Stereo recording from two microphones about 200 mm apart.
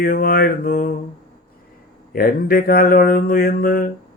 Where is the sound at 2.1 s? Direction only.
45° left (ahead or behind).